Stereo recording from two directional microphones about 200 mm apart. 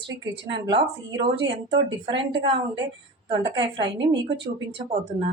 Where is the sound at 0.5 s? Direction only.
25° right (ahead or behind).